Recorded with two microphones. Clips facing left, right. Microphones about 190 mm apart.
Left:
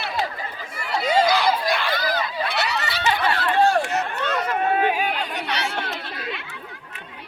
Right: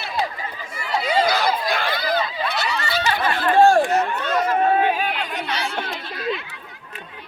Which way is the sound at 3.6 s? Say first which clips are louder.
Right 6 dB; 45° right (ahead or behind).